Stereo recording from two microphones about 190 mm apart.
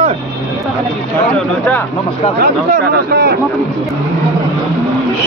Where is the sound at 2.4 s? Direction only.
55° right (ahead or behind).